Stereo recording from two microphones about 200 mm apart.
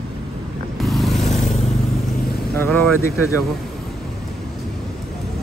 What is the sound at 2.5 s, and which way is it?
Speech, 10° left (ahead or behind).